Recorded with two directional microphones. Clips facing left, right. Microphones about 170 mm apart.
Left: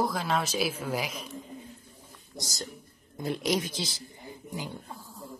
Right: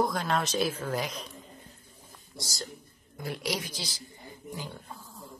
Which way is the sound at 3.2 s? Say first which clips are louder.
Left 5 dB; 20° left (ahead or behind).